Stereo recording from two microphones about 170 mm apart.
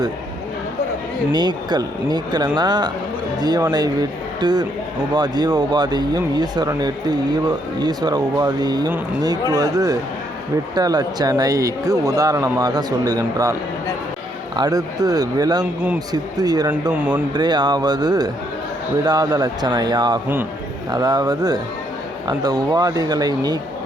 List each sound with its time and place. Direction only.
1.3 s speech: 25° right (ahead or behind)
17.0 s speech: 10° right (ahead or behind)
17.3 s speech: 25° right (ahead or behind)